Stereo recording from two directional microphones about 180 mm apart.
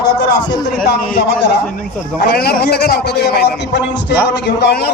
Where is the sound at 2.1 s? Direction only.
60° left (ahead or behind).